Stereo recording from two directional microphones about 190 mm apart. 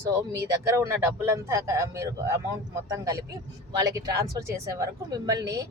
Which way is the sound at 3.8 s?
20° right (ahead or behind).